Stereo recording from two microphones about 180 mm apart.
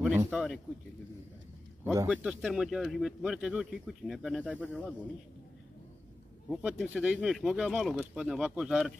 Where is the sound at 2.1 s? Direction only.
5° right (ahead or behind).